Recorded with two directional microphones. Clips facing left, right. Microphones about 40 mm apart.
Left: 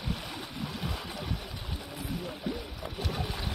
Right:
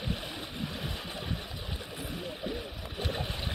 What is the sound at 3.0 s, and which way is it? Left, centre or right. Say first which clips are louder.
Boat: right 1 dB; right.